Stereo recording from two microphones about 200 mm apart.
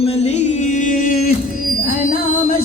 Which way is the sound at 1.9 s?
45° left (ahead or behind).